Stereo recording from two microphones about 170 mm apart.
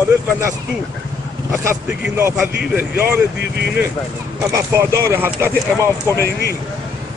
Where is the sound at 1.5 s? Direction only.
15° right (ahead or behind).